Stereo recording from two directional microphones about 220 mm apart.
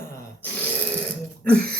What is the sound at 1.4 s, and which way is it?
Throat clearing, 5° left (ahead or behind).